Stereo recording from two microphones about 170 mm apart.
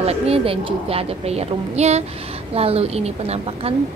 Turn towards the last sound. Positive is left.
turn(degrees=-35)  # may be behind; listen again after turning